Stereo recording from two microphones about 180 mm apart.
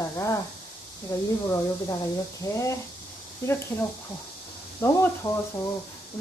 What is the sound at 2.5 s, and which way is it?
Speech, 15° left (ahead or behind).